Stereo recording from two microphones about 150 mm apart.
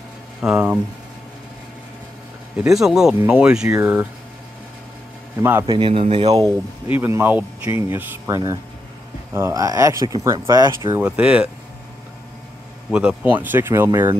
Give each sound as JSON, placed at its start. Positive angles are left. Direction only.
{"t": 0.4, "sound": "speech", "side_deg": -5}
{"t": 2.5, "sound": "speech", "side_deg": -5}
{"t": 5.4, "sound": "speech", "side_deg": -15}
{"t": 5.7, "sound": "a man's voice", "side_deg": -35}
{"t": 6.9, "sound": "speech", "side_deg": -15}
{"t": 11.0, "sound": "speech", "side_deg": -10}
{"t": 12.9, "sound": "speech", "side_deg": -5}